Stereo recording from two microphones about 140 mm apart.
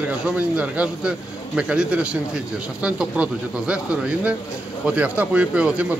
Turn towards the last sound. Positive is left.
turn(degrees=-10)  # may be behind; listen again after turning